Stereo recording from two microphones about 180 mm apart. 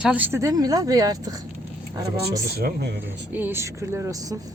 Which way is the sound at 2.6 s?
65° right (ahead or behind).